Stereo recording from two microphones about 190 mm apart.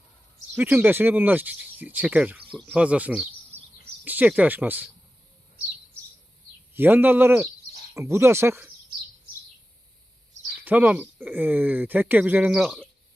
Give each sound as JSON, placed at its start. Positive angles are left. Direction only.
{"t": 0.5, "sound": "speech", "side_deg": -10}
{"t": 3.5, "sound": "bird vocalization", "side_deg": -35}
{"t": 4.0, "sound": "speech", "side_deg": -10}
{"t": 6.7, "sound": "speech", "side_deg": -10}
{"t": 10.6, "sound": "speech", "side_deg": -10}